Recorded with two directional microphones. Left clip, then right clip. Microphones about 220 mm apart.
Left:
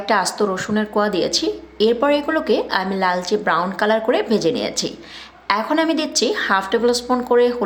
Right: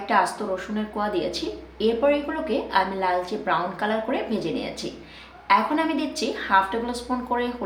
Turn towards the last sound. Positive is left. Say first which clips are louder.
# left 10 dB
turn(degrees=50)  # may be behind; listen again after turning